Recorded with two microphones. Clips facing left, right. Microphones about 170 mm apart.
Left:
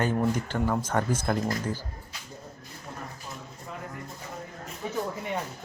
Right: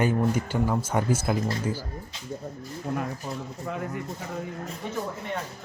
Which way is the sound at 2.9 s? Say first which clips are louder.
Right 12 dB; 90° right.